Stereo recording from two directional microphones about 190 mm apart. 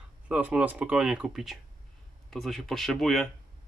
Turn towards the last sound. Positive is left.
turn(degrees=0)  # may be behind; listen again after turning